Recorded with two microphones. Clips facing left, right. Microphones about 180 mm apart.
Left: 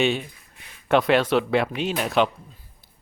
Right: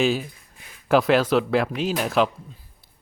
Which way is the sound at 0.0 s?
Centre (ahead or behind).